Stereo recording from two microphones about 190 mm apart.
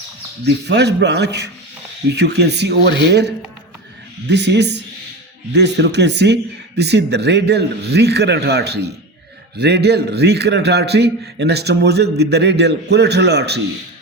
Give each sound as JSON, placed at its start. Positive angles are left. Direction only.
{"t": 0.4, "sound": "a man's voice", "side_deg": -60}